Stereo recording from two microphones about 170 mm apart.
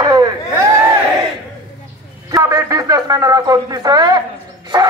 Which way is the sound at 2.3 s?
20° right (ahead or behind).